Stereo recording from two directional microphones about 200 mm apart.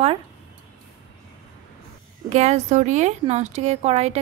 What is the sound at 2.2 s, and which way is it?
Speech, 35° right (ahead or behind).